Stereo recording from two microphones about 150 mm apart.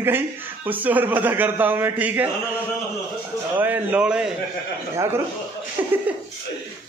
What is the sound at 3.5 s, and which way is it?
Speech, 10° right (ahead or behind).